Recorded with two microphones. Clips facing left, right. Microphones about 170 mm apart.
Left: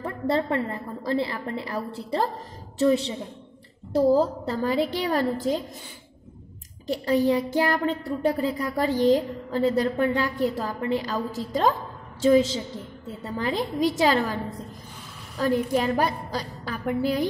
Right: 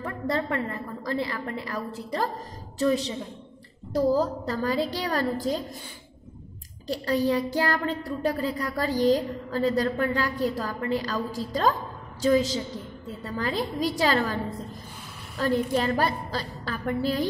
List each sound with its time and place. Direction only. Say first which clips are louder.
0.0 s a woman's voice: left 3 dB; 25° left (ahead or behind)
6.9 s a woman's voice: left 3 dB; 20° left (ahead or behind)